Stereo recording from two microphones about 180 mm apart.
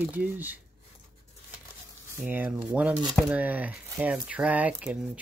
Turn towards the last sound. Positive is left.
turn(degrees=-5)  # may be behind; listen again after turning